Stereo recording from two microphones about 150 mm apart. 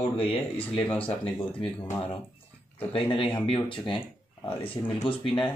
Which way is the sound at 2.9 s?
35° left (ahead or behind).